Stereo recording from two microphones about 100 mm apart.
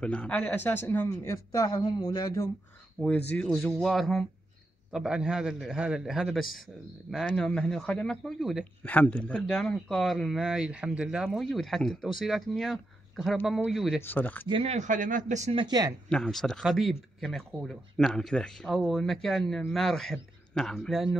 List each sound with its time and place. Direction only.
0.0 s a man's voice: 10° left (ahead or behind); by 2.5 s 35° left (ahead or behind)
3.0 s speech: 5° left (ahead or behind)
7.2 s speech: 10° left (ahead or behind)
8.8 s speech: 15° left (ahead or behind); by 14.0 s 5° right (ahead or behind)
14.0 s speech: 15° left (ahead or behind)
14.5 s speech: 85° right
15.5 s speech: 45° right (ahead or behind)
16.1 s speech: 5° left (ahead or behind)